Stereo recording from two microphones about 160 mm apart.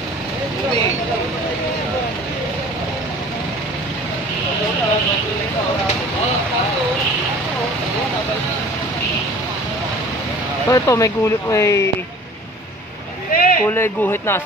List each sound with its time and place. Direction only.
10.7 s speech: 20° left (ahead or behind)
13.3 s a sound: 65° left (ahead or behind)
13.7 s speech: 15° left (ahead or behind)